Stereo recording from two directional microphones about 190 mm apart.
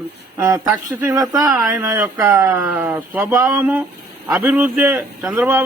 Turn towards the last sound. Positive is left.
turn(degrees=-10)  # may be behind; listen again after turning